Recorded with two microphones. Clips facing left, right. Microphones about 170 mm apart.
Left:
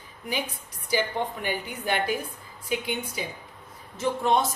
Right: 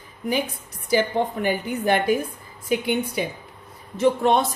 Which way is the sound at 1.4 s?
50° right (ahead or behind).